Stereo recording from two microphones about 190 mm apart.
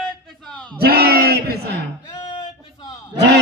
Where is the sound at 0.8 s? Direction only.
55° right (ahead or behind).